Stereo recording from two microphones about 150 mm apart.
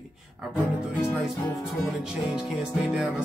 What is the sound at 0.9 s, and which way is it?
Music, 10° left (ahead or behind).